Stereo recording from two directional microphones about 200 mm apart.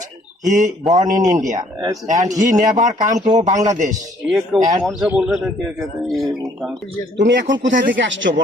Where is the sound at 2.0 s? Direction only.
40° right (ahead or behind).